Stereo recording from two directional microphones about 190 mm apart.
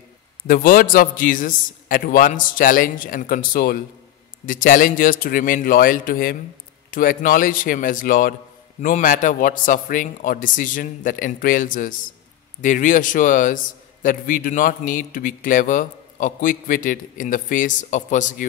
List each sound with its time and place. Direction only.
0.5 s a man's voice: 50° left (ahead or behind)